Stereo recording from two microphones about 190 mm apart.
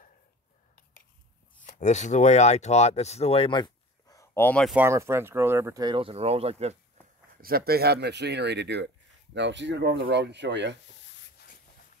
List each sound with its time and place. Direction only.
1.6 s speech: 40° left (ahead or behind); by 4.7 s 5° left (ahead or behind)
4.7 s speech: 15° right (ahead or behind); by 6.8 s 35° right (ahead or behind)
7.4 s speech: 50° right (ahead or behind)